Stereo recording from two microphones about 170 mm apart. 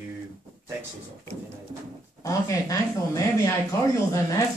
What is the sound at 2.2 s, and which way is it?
Speech, 20° left (ahead or behind).